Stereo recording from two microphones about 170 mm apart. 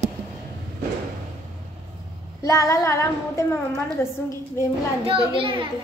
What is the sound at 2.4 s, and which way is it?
Female singing, 20° left (ahead or behind).